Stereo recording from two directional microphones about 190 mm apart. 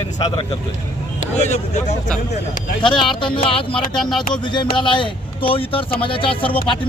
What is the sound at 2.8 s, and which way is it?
Speech, 25° left (ahead or behind).